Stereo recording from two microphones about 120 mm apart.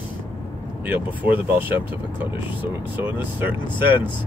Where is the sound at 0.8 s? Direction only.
15° right (ahead or behind).